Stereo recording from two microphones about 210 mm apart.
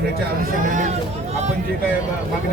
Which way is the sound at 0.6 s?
35° right (ahead or behind).